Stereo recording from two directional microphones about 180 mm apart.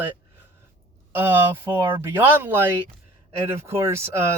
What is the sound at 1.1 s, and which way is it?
Speech, 10° right (ahead or behind).